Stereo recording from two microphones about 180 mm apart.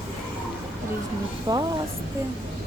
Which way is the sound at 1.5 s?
20° right (ahead or behind).